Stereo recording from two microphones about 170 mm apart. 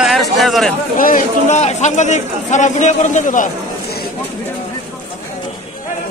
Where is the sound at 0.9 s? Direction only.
55° left (ahead or behind).